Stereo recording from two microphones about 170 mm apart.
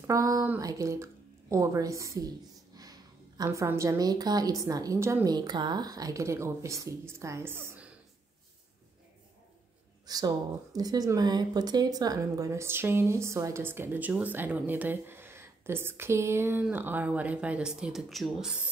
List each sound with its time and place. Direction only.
0.0 s a woman's voice: 20° right (ahead or behind)
10.0 s speech: 20° right (ahead or behind); by 18.7 s 5° right (ahead or behind)